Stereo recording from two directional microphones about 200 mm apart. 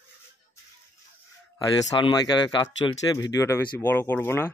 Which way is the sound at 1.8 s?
20° left (ahead or behind).